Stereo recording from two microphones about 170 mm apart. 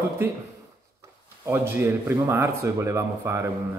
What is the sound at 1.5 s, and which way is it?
Speech, 15° right (ahead or behind).